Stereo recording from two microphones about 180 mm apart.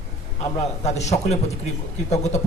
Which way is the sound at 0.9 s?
40° left (ahead or behind).